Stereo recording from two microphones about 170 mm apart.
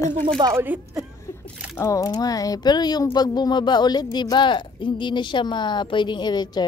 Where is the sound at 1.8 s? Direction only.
20° left (ahead or behind).